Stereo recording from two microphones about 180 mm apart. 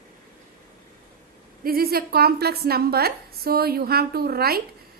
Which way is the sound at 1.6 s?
55° right (ahead or behind).